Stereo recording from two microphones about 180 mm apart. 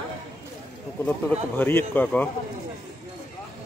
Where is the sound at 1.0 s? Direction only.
10° left (ahead or behind).